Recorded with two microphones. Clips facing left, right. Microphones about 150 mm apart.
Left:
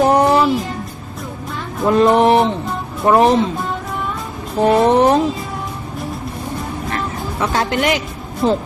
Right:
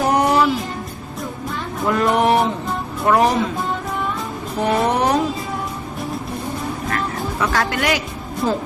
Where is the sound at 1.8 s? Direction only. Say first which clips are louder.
Left 5 dB; 25° left (ahead or behind).